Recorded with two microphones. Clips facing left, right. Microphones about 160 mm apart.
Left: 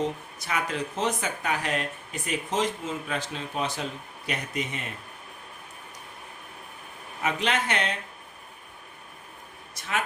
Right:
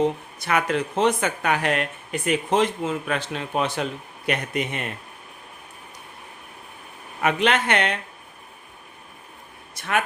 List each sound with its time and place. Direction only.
0.0 s speech: 65° right (ahead or behind)
7.2 s speech: 65° right (ahead or behind)